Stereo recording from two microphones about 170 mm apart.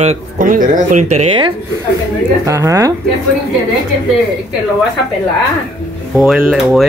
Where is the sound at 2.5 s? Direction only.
15° right (ahead or behind).